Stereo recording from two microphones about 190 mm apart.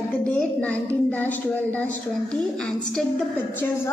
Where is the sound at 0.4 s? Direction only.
5° left (ahead or behind).